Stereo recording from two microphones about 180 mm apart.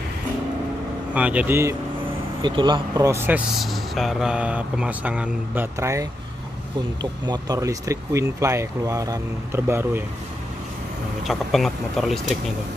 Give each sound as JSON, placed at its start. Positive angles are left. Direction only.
{"t": 1.1, "sound": "speech", "side_deg": -5}
{"t": 2.4, "sound": "speech", "side_deg": -25}
{"t": 11.2, "sound": "speech", "side_deg": 0}